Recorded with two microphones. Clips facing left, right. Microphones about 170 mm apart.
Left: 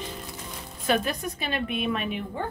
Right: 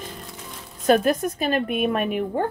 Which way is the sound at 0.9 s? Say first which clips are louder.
Right 8 dB; 45° right (ahead or behind).